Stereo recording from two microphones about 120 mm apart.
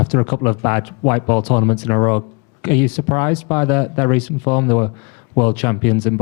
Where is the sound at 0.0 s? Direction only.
20° left (ahead or behind).